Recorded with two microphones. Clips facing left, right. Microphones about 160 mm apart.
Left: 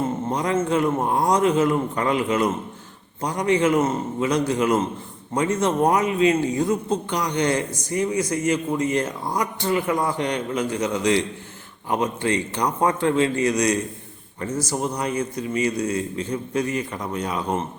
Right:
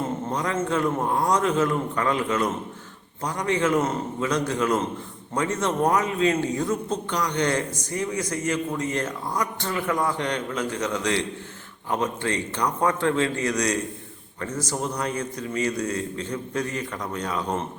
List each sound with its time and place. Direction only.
0.3 s a man's voice: 15° left (ahead or behind)